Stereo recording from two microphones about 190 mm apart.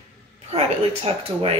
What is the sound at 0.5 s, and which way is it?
Speech, 30° right (ahead or behind).